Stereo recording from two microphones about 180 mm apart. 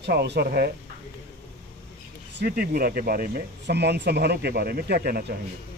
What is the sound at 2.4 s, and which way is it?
Speech, 60° right (ahead or behind).